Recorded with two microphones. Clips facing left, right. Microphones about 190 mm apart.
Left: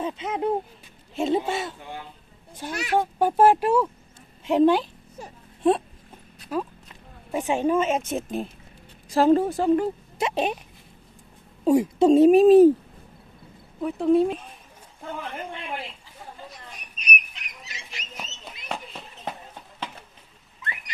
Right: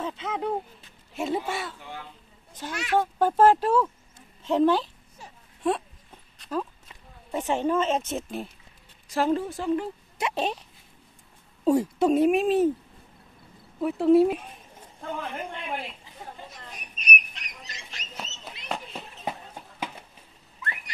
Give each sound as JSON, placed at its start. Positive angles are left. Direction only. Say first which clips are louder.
{"t": 0.0, "sound": "a woman's voice", "louder": "left 4 dB", "side_deg": 15}
{"t": 6.3, "sound": "clip-clop", "louder": "left 2 dB", "side_deg": 5}
{"t": 7.3, "sound": "a woman's voice", "louder": "left 3 dB", "side_deg": 10}
{"t": 9.1, "sound": "a woman's voice", "louder": "left 6 dB", "side_deg": 35}
{"t": 10.1, "sound": "speech", "louder": "left 1 dB", "side_deg": 25}
{"t": 11.6, "sound": "a woman's voice", "louder": "left 3 dB", "side_deg": 15}
{"t": 12.1, "sound": "a woman's voice", "louder": "left 9 dB", "side_deg": 30}
{"t": 13.7, "sound": "speech", "louder": "right 1 dB", "side_deg": 0}
{"t": 16.7, "sound": "a sound", "louder": "right 1 dB", "side_deg": 0}
{"t": 18.4, "sound": "a sound", "louder": "even", "side_deg": 0}